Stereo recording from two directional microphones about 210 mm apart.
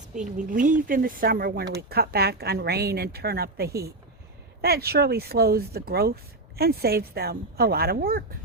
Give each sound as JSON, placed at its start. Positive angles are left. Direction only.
{"t": 0.1, "sound": "speech", "side_deg": -40}